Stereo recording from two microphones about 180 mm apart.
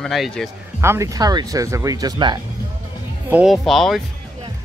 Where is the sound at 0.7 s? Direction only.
15° right (ahead or behind).